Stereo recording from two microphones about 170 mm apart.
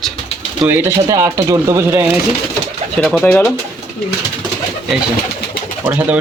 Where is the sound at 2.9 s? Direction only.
5° left (ahead or behind).